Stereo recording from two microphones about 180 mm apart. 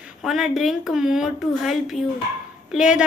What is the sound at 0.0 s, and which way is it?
Speech, centre (ahead or behind).